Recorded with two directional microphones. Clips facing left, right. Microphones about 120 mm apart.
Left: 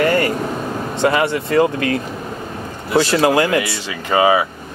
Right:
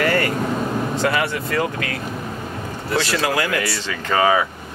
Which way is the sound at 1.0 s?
25° left (ahead or behind).